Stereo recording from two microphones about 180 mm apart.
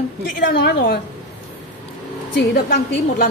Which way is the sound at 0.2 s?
65° left (ahead or behind).